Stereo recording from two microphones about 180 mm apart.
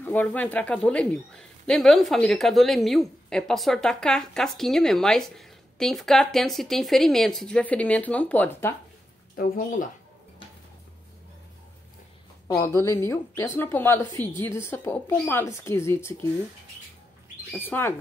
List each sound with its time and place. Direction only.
0.0 s a man's voice: 10° left (ahead or behind)
9.4 s speech: 45° left (ahead or behind)
12.5 s speech: 15° left (ahead or behind)
17.5 s speech: 10° left (ahead or behind)